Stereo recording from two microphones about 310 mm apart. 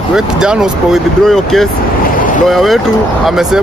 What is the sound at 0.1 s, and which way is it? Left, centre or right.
Speech, centre.